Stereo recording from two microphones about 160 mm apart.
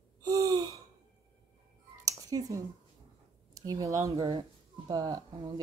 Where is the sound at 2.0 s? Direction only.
20° right (ahead or behind).